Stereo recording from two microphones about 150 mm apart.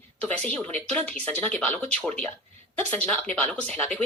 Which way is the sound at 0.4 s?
5° left (ahead or behind).